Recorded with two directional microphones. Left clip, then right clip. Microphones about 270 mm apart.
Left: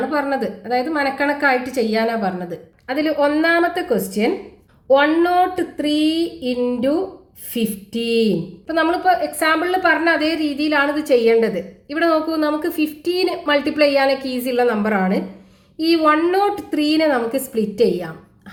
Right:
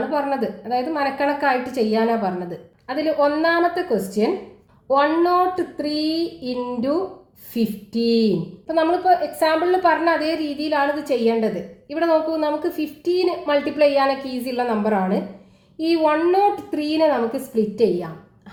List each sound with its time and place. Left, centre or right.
0.1 s a woman's voice: left